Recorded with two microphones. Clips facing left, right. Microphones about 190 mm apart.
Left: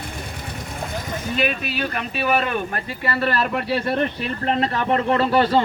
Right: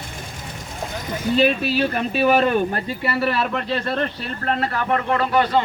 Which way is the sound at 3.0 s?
10° right (ahead or behind).